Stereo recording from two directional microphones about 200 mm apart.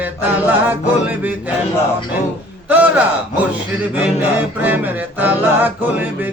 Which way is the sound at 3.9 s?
10° right (ahead or behind).